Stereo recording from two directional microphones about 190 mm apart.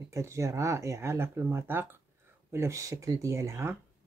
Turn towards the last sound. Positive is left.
turn(degrees=-15)  # may be behind; listen again after turning